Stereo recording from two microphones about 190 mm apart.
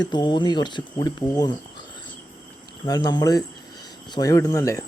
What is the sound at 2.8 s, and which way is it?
Speech, 20° left (ahead or behind).